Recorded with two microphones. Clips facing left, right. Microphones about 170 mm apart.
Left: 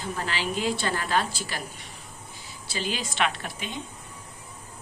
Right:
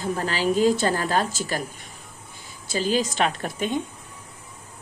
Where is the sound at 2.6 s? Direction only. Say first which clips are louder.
Right 8 dB; 40° right (ahead or behind).